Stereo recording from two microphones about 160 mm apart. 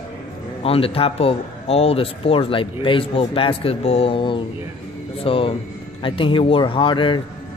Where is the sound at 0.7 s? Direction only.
35° left (ahead or behind).